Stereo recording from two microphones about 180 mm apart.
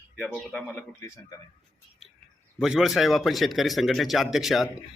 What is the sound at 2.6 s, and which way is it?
Speech, centre (ahead or behind).